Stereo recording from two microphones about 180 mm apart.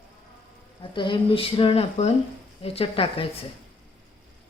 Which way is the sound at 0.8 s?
25° left (ahead or behind).